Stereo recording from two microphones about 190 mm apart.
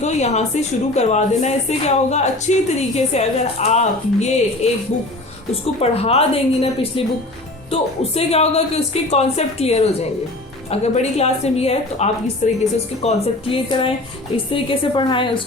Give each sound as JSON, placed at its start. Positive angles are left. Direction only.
{"t": 0.0, "sound": "a woman's voice", "side_deg": 35}
{"t": 5.8, "sound": "a woman's voice", "side_deg": 30}